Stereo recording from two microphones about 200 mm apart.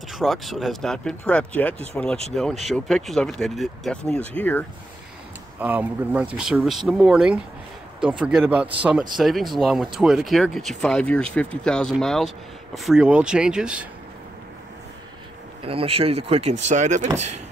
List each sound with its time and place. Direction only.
0.1 s speech: centre (ahead or behind)
5.6 s speech: 10° right (ahead or behind)
15.6 s speech: 30° right (ahead or behind)